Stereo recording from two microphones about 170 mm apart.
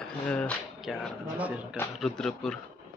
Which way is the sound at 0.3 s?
5° left (ahead or behind).